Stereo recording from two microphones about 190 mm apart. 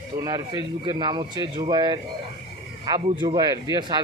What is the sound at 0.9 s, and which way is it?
Speech, 25° right (ahead or behind).